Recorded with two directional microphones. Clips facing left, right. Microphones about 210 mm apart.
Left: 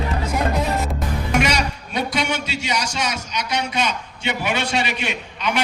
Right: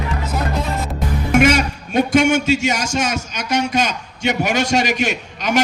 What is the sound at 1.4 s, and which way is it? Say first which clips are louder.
A man's voice: right 7 dB; 45° right (ahead or behind).